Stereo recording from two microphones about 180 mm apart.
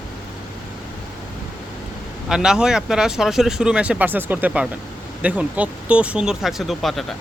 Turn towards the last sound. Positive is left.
turn(degrees=0)  # may be behind; listen again after turning